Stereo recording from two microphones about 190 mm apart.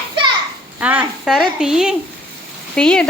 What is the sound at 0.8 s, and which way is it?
A woman's voice, 5° right (ahead or behind).